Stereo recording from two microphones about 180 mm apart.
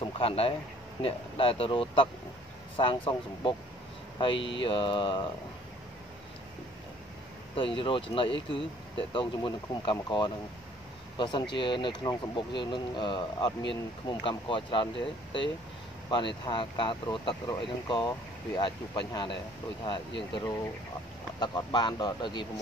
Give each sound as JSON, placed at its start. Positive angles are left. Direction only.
{"t": 0.0, "sound": "speech", "side_deg": 30}
{"t": 7.5, "sound": "speech", "side_deg": 30}
{"t": 8.5, "sound": "speech", "side_deg": 80}
{"t": 9.1, "sound": "speech", "side_deg": 30}
{"t": 11.5, "sound": "speech", "side_deg": 25}